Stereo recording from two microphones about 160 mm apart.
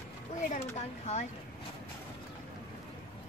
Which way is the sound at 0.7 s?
45° left (ahead or behind).